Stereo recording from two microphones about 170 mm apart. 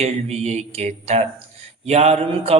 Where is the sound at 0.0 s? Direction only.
40° right (ahead or behind).